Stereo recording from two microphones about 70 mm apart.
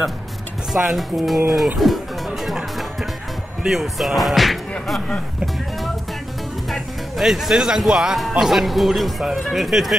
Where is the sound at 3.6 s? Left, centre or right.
Centre.